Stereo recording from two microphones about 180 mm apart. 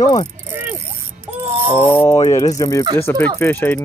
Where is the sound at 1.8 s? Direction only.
10° left (ahead or behind).